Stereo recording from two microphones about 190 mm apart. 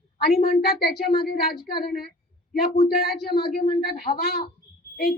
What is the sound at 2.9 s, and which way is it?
A woman's voice, 55° left (ahead or behind).